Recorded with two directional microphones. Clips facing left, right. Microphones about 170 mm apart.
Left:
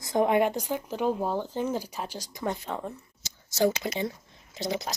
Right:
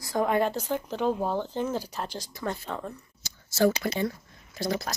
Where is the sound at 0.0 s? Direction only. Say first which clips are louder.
Left 2 dB; 20° left (ahead or behind).